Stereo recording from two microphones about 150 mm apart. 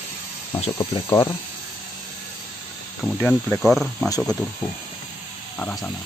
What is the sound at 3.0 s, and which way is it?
Speech, centre (ahead or behind).